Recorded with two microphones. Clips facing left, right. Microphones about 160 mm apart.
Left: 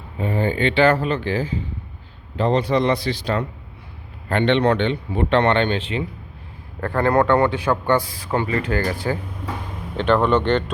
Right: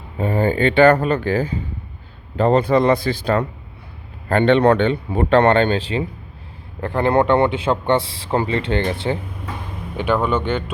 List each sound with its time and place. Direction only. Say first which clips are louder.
0.2 s speech: right 3 dB; 45° right (ahead or behind)
6.8 s a man's voice: right 1 dB; 20° right (ahead or behind)
10.0 s speech: left 2 dB; 5° right (ahead or behind)